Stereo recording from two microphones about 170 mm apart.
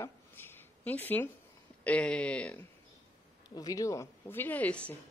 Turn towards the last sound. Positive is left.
turn(degrees=10)  # may be behind; listen again after turning